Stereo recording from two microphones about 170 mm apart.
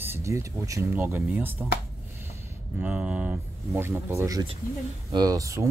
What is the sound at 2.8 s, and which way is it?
Speech, 10° right (ahead or behind).